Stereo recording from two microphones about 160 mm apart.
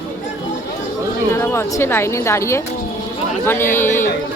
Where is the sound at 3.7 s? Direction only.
15° left (ahead or behind).